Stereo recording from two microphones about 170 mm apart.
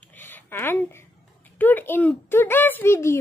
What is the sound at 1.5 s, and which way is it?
Speech, 10° left (ahead or behind).